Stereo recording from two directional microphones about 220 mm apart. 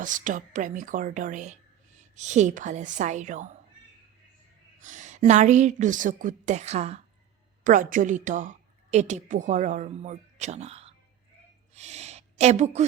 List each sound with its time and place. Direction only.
0.0 s a woman's voice: 35° right (ahead or behind)
4.8 s a woman's voice: 35° right (ahead or behind)
11.7 s a sound: 30° right (ahead or behind)